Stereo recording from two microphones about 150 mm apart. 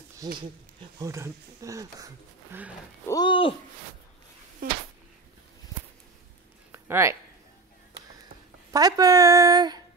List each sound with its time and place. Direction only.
0.2 s speech: 25° right (ahead or behind)
3.1 s speech: 30° left (ahead or behind)
4.6 s speech: 70° right (ahead or behind)
6.7 s a sound: 20° right (ahead or behind)
8.7 s speech: 25° right (ahead or behind)